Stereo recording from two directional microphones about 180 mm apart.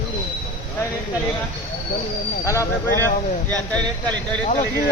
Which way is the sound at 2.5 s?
15° left (ahead or behind).